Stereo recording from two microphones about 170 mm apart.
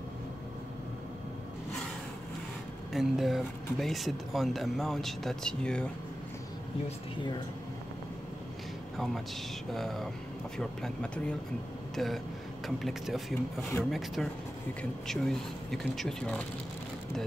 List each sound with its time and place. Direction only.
2.9 s speech: centre (ahead or behind)
8.9 s speech: centre (ahead or behind)